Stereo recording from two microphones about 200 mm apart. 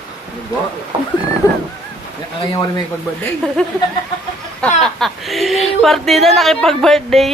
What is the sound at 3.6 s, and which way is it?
Speech, 5° left (ahead or behind).